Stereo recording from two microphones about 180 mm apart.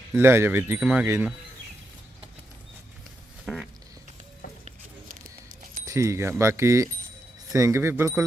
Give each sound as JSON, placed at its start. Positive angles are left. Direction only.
{"t": 0.1, "sound": "speech", "side_deg": -15}
{"t": 3.4, "sound": "a sound", "side_deg": 0}
{"t": 5.8, "sound": "speech", "side_deg": -15}